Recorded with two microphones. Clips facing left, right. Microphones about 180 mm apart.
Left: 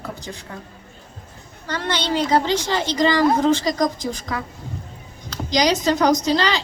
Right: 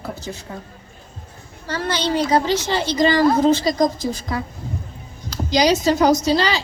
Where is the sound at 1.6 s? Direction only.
10° right (ahead or behind).